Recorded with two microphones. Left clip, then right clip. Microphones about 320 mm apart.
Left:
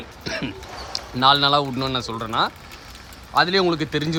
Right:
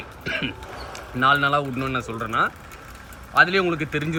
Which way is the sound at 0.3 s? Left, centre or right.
Centre.